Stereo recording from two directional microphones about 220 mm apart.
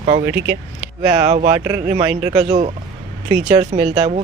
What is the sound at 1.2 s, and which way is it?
Speech, 30° right (ahead or behind).